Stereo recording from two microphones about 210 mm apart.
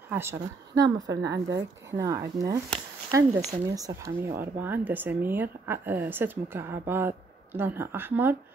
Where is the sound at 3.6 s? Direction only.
15° right (ahead or behind).